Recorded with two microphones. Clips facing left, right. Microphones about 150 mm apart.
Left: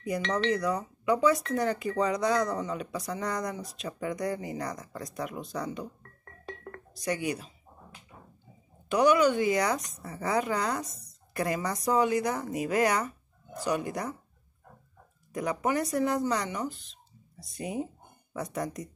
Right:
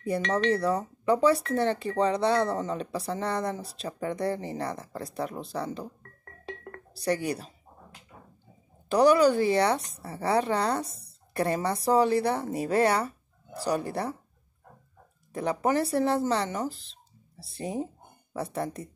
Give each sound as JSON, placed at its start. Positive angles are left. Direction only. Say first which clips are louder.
{"t": 0.3, "sound": "a woman's voice", "louder": "right 3 dB", "side_deg": -30}
{"t": 2.5, "sound": "a woman's voice", "louder": "right 2 dB", "side_deg": -40}
{"t": 6.7, "sound": "cash register", "louder": "right 4 dB", "side_deg": -35}
{"t": 8.8, "sound": "a woman's voice", "louder": "right 3 dB", "side_deg": -35}
{"t": 15.3, "sound": "a woman's voice", "louder": "right 3 dB", "side_deg": -35}